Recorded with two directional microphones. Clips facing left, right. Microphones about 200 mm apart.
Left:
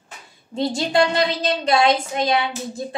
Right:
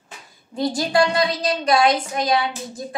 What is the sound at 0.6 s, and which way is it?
A woman's voice, 25° left (ahead or behind).